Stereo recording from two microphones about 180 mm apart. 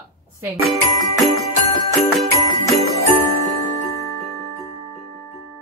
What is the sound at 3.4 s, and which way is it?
Glockenspiel, 35° right (ahead or behind).